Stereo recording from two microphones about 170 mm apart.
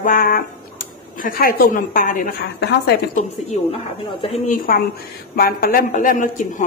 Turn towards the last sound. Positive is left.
turn(degrees=50)  # may be behind; listen again after turning